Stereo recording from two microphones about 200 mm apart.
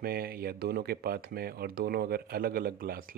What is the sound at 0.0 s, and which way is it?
Speech, 50° right (ahead or behind).